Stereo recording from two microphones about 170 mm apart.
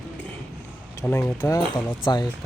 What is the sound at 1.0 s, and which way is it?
Speech, 15° left (ahead or behind).